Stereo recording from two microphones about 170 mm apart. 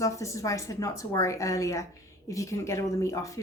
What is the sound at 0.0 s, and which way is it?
Speech, 20° left (ahead or behind).